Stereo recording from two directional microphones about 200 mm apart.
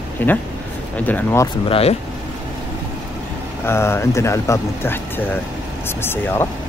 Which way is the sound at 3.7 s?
10° left (ahead or behind).